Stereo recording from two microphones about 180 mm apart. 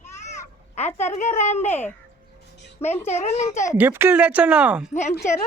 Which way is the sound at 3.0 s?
40° left (ahead or behind).